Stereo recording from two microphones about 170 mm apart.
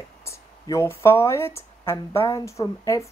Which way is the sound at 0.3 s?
15° left (ahead or behind).